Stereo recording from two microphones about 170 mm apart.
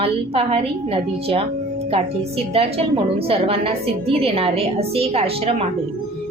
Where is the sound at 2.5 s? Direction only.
35° right (ahead or behind).